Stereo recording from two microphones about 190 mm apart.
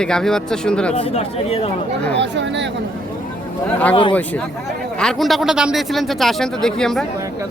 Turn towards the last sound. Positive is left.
turn(degrees=0)  # may be behind; listen again after turning